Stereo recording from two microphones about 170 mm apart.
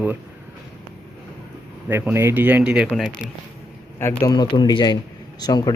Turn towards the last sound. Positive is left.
turn(degrees=25)  # may be behind; listen again after turning